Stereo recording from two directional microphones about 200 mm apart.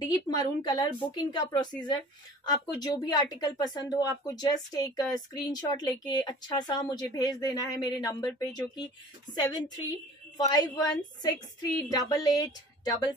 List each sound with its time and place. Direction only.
0.0 s speech: 20° left (ahead or behind)